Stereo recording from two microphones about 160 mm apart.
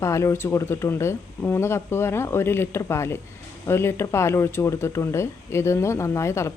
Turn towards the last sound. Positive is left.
turn(degrees=15)  # may be behind; listen again after turning